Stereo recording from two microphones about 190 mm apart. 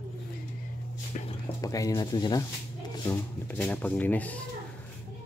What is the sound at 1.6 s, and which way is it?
Speech, 15° left (ahead or behind).